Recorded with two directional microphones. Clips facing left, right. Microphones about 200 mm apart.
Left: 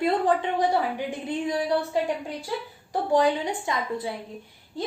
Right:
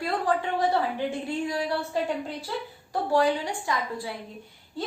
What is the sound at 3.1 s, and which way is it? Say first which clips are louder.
Speech: left 2 dB; 20° left (ahead or behind).